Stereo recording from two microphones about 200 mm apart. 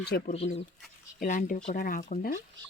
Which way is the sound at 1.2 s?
40° left (ahead or behind).